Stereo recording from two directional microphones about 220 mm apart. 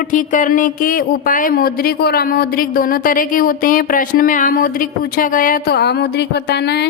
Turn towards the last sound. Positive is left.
turn(degrees=50)  # may be behind; listen again after turning